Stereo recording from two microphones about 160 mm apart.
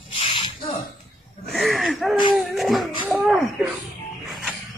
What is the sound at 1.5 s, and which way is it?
Wheeze, centre (ahead or behind).